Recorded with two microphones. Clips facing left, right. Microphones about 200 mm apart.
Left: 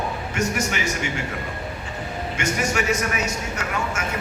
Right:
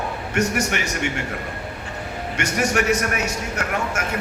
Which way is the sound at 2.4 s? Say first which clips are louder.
Right 3 dB; 65° right (ahead or behind).